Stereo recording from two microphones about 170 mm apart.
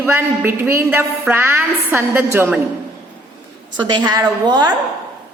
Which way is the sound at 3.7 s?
25° right (ahead or behind).